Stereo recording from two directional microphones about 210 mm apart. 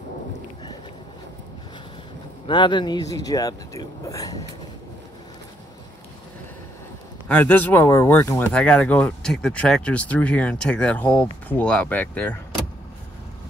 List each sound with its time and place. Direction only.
2.4 s speech: 20° left (ahead or behind)
7.2 s speech: 5° left (ahead or behind)